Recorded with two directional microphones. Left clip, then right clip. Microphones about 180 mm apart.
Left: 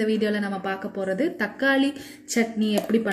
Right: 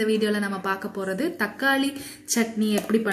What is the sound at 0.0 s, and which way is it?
A woman's voice, 20° left (ahead or behind).